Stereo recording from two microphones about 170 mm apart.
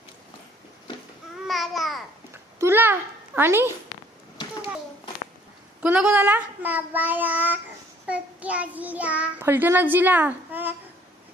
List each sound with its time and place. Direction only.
1.5 s babbling: centre (ahead or behind)
2.6 s a child's voice: 15° right (ahead or behind)
4.4 s a sound: 30° left (ahead or behind)
5.8 s a child's voice: 5° right (ahead or behind)